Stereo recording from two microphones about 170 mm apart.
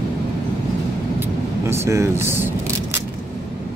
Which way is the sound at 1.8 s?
15° right (ahead or behind).